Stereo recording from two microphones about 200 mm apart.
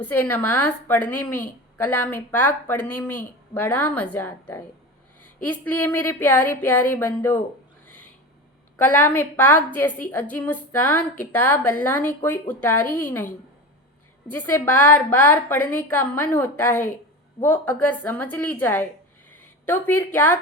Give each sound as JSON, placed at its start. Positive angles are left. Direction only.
{"t": 0.0, "sound": "a woman's voice", "side_deg": 10}
{"t": 8.7, "sound": "a woman's voice", "side_deg": 10}
{"t": 14.3, "sound": "a woman's voice", "side_deg": 10}
{"t": 19.3, "sound": "a sound", "side_deg": 10}